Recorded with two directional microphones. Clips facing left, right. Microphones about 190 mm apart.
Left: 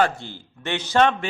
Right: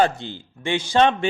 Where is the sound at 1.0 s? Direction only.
20° right (ahead or behind).